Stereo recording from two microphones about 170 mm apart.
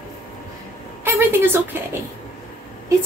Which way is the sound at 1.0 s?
10° right (ahead or behind).